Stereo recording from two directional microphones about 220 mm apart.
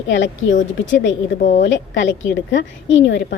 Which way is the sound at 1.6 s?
55° left (ahead or behind).